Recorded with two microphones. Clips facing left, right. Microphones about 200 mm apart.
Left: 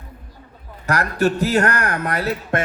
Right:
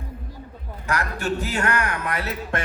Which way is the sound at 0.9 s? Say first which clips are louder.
Left 6 dB; 40° left (ahead or behind).